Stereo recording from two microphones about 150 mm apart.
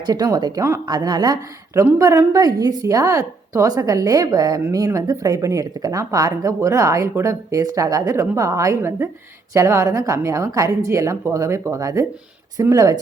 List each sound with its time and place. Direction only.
0.0 s a woman's voice: 25° right (ahead or behind)